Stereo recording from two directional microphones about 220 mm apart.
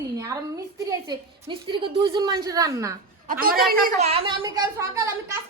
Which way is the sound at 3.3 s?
40° right (ahead or behind).